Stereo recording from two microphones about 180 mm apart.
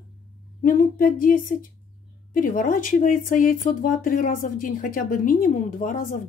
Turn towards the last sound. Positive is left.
turn(degrees=50)  # may be behind; listen again after turning